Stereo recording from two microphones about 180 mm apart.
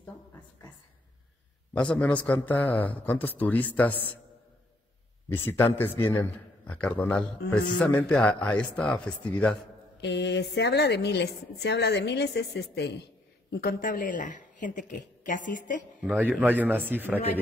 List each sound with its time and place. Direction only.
1.7 s a man's voice: 5° left (ahead or behind)
5.3 s a man's voice: 10° left (ahead or behind)
9.9 s a woman's voice: 75° left (ahead or behind)
13.5 s speech: 55° left (ahead or behind)
16.0 s a man's voice: 10° right (ahead or behind)